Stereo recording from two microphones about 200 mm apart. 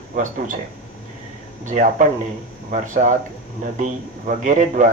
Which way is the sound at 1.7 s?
40° right (ahead or behind).